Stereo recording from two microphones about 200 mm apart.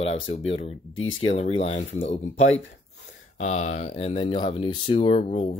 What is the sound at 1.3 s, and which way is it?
Speech, 30° left (ahead or behind).